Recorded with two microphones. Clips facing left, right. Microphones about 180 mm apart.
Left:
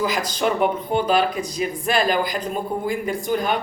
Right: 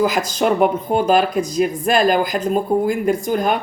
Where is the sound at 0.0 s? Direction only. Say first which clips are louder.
Right 5 dB; 45° right (ahead or behind).